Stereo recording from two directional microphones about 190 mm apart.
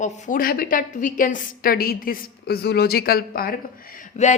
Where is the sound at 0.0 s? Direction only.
40° left (ahead or behind).